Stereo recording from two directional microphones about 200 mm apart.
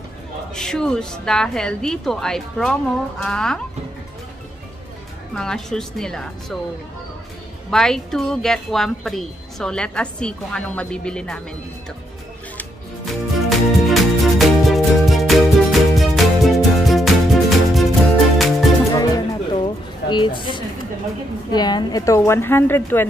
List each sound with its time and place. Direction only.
0.6 s speech: 5° left (ahead or behind)
5.3 s speech: 5° left (ahead or behind)
7.7 s speech: centre (ahead or behind)
12.5 s music: centre (ahead or behind)
18.9 s music: 20° left (ahead or behind)
21.5 s a woman's voice: 20° left (ahead or behind)